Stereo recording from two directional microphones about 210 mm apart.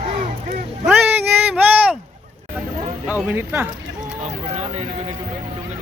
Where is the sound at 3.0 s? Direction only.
10° right (ahead or behind).